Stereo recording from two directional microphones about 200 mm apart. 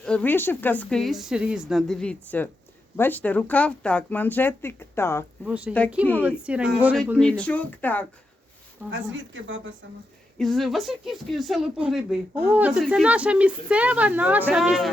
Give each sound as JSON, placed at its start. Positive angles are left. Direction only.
{"t": 0.0, "sound": "speech", "side_deg": 5}
{"t": 5.5, "sound": "a woman's voice", "side_deg": -5}
{"t": 8.9, "sound": "speech", "side_deg": -70}
{"t": 10.3, "sound": "speech", "side_deg": 0}